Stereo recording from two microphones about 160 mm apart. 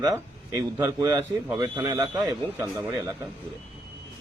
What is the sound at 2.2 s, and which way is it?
Speech, 15° right (ahead or behind).